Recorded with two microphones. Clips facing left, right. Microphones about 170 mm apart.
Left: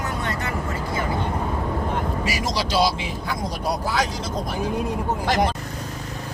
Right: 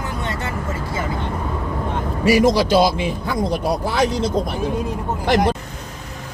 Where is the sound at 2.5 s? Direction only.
50° right (ahead or behind).